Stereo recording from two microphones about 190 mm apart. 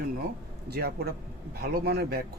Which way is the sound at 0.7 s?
55° right (ahead or behind).